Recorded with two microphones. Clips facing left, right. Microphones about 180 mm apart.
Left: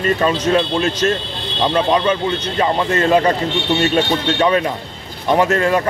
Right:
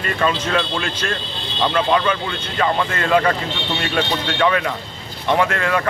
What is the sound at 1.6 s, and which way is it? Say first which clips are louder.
Speech: left 2 dB; 20° left (ahead or behind).